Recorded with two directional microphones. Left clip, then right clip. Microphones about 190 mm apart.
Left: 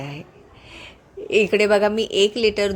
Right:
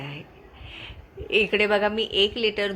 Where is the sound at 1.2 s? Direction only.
35° left (ahead or behind).